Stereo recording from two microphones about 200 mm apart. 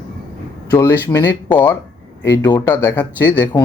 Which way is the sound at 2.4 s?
20° left (ahead or behind).